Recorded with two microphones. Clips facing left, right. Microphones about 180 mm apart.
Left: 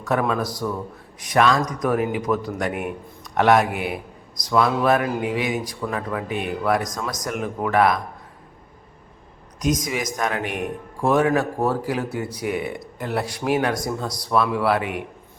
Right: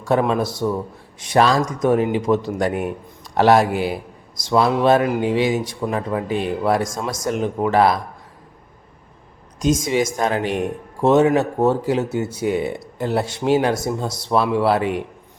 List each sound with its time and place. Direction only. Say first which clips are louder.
0.0 s speech: right 4 dB; 30° right (ahead or behind)
9.6 s speech: right 5 dB; 25° right (ahead or behind)